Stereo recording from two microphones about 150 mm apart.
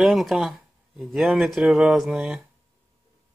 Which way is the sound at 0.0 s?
Centre (ahead or behind).